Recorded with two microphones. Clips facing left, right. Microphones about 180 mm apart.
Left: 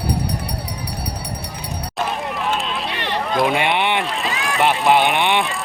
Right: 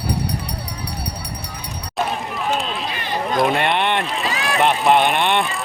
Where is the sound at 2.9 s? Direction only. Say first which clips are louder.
Left 1 dB; 70° left (ahead or behind).